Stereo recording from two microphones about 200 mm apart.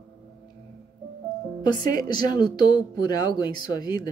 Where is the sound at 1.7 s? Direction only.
20° left (ahead or behind).